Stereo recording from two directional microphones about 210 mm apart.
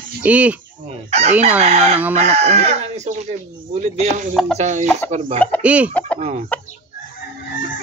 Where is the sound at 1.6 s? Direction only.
30° right (ahead or behind).